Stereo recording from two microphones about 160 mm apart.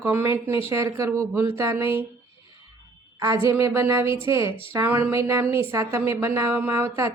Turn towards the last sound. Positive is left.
turn(degrees=-15)  # may be behind; listen again after turning